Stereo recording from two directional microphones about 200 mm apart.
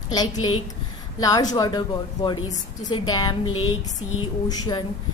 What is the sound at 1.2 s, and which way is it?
A woman's voice, 20° left (ahead or behind).